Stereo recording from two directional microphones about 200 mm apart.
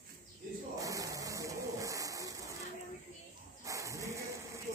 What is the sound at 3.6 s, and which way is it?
Dog, 15° right (ahead or behind).